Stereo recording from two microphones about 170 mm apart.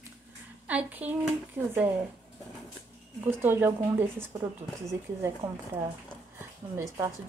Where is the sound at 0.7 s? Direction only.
10° right (ahead or behind).